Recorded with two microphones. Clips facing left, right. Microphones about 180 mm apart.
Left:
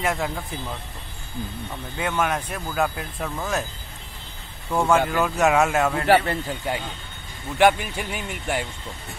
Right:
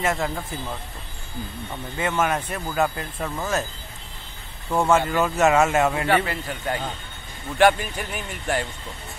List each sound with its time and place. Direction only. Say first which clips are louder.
0.0 s a man's voice: right 1 dB; centre (ahead or behind)
2.0 s a man's voice: right 1 dB; centre (ahead or behind)
4.6 s a man's voice: even; 5° right (ahead or behind)
6.0 s speech: left 3 dB; 35° left (ahead or behind)
7.5 s speech: even; 15° left (ahead or behind)